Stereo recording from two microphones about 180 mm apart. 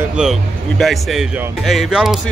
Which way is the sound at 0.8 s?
Centre (ahead or behind).